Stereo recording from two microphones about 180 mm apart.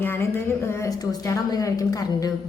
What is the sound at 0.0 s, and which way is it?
A woman's voice, 10° left (ahead or behind).